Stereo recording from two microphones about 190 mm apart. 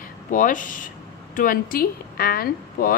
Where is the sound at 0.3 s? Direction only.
45° left (ahead or behind).